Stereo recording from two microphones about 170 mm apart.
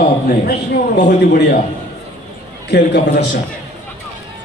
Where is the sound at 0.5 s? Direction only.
60° left (ahead or behind).